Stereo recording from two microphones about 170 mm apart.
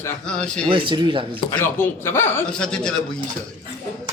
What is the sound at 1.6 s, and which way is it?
Speech, 15° left (ahead or behind).